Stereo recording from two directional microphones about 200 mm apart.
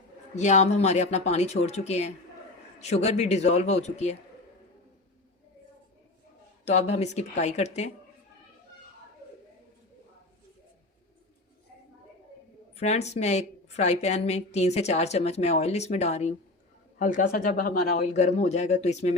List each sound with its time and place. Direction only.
0.3 s a woman's voice: 35° left (ahead or behind)
6.7 s a woman's voice: 35° left (ahead or behind)
12.7 s a woman's voice: 35° left (ahead or behind)